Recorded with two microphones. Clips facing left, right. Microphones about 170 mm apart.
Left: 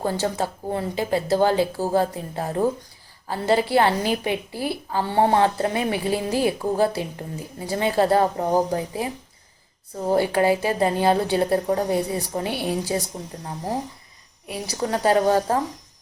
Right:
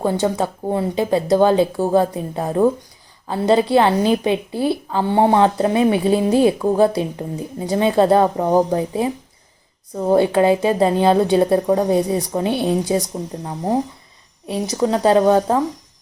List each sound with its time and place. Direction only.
0.0 s a woman's voice: 20° right (ahead or behind)
1.7 s speech: 60° right (ahead or behind)
2.0 s a woman's voice: 20° right (ahead or behind)
10.2 s a woman's voice: 25° right (ahead or behind)
14.4 s a woman's voice: 25° right (ahead or behind)